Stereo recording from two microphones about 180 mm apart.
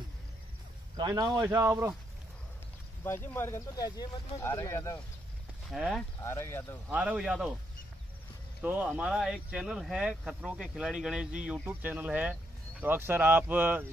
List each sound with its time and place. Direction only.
0.9 s speech: 20° right (ahead or behind)
3.0 s speech: 10° left (ahead or behind)
5.7 s speech: centre (ahead or behind)
6.2 s speech: 15° left (ahead or behind)
6.9 s speech: 5° right (ahead or behind)
8.6 s speech: 10° right (ahead or behind)